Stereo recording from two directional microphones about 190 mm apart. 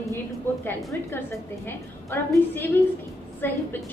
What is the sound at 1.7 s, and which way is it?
A woman's voice, 10° left (ahead or behind).